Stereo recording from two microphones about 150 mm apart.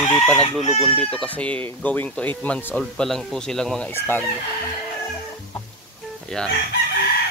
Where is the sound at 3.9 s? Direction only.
15° left (ahead or behind).